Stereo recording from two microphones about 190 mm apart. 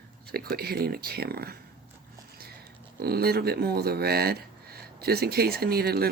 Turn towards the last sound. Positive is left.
turn(degrees=-55)  # may be behind; listen again after turning